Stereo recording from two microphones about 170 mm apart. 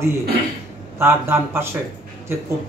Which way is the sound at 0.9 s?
15° right (ahead or behind).